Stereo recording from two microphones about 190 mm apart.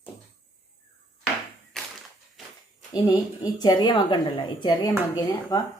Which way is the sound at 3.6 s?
25° left (ahead or behind).